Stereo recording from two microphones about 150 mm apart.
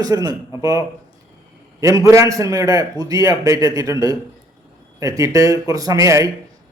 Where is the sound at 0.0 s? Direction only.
25° right (ahead or behind).